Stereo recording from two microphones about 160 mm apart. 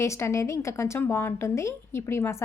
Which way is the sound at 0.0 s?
15° left (ahead or behind).